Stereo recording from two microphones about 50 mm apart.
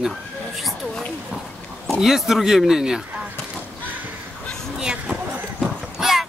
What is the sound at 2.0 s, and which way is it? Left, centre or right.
Speech, centre.